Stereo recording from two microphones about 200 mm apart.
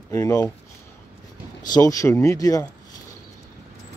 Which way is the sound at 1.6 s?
20° left (ahead or behind).